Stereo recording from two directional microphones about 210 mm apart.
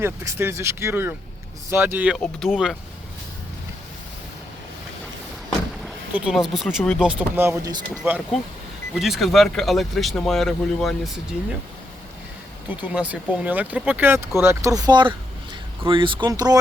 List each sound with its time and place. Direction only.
0.0 s speech: 10° right (ahead or behind)
5.5 s speech: centre (ahead or behind)
9.0 s speech: centre (ahead or behind)
12.8 s speech: 5° right (ahead or behind)